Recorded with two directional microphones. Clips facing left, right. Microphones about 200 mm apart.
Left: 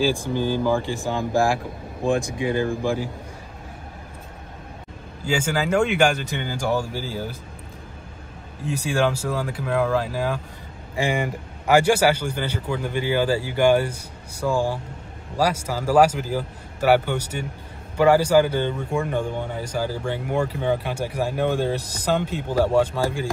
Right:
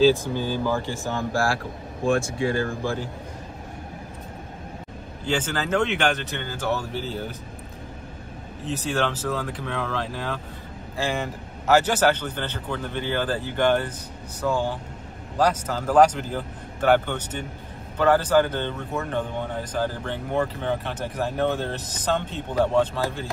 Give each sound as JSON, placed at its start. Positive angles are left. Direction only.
{"t": 0.0, "sound": "a man's voice", "side_deg": 15}
{"t": 5.2, "sound": "a man's voice", "side_deg": 10}
{"t": 8.6, "sound": "a man's voice", "side_deg": 10}